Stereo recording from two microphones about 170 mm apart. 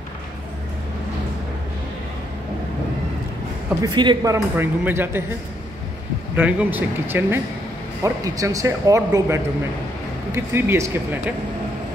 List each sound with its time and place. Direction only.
3.8 s speech: 25° right (ahead or behind)
6.3 s speech: 10° right (ahead or behind)